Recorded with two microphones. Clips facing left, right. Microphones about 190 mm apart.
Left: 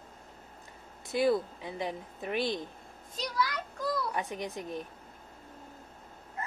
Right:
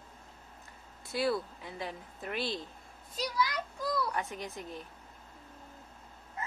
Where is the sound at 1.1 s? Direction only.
20° left (ahead or behind).